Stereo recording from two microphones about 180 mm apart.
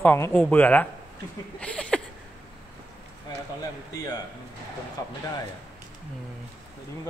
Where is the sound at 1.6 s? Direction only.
5° left (ahead or behind).